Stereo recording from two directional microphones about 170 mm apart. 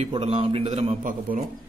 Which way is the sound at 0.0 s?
35° right (ahead or behind).